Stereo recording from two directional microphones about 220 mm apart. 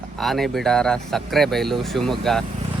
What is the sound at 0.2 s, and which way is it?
Speech, centre (ahead or behind).